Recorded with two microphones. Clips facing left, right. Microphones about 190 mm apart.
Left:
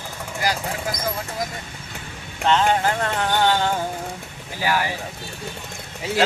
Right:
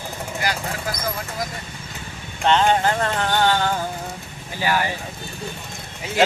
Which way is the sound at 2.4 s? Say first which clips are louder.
Right 1 dB; 5° left (ahead or behind).